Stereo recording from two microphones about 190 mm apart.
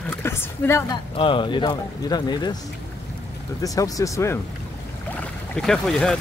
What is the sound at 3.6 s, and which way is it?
Speech, 20° left (ahead or behind).